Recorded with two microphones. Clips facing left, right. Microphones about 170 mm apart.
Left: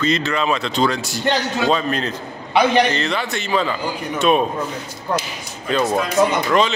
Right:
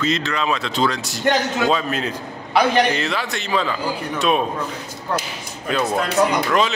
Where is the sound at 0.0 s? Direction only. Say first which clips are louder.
Left 2 dB; centre (ahead or behind).